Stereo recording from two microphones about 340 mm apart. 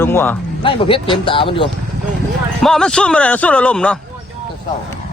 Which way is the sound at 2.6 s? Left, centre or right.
Centre.